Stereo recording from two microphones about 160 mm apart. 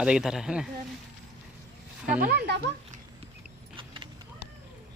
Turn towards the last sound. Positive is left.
turn(degrees=-35)  # may be behind; listen again after turning